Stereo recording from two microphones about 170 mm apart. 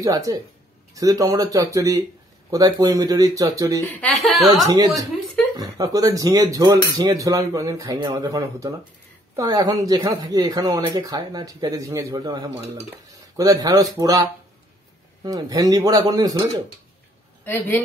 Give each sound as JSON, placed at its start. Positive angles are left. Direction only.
{"t": 0.0, "sound": "speech", "side_deg": -20}
{"t": 3.8, "sound": "speech", "side_deg": 10}
{"t": 4.2, "sound": "speech", "side_deg": 0}
{"t": 4.5, "sound": "speech", "side_deg": -20}
{"t": 17.5, "sound": "speech", "side_deg": 10}